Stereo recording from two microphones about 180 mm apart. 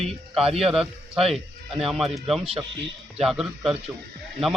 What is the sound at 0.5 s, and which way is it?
Speech, centre (ahead or behind).